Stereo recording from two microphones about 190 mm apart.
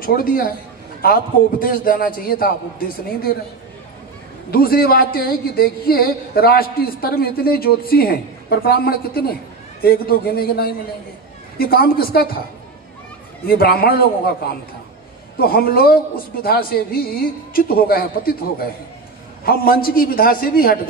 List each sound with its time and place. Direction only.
0.0 s speech: 50° left (ahead or behind)
4.5 s speech: 50° left (ahead or behind)
13.5 s speech: 55° left (ahead or behind)